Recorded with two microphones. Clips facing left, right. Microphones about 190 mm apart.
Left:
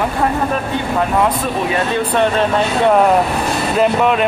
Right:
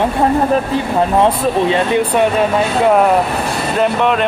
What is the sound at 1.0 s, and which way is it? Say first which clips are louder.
Speech: right 3 dB; 30° right (ahead or behind).